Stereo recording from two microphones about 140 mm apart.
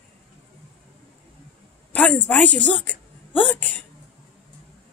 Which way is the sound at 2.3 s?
10° left (ahead or behind).